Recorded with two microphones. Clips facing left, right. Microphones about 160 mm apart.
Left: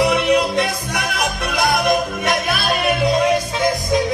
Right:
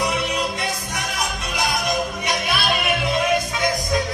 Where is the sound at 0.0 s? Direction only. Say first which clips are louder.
Left 8 dB; 70° left (ahead or behind).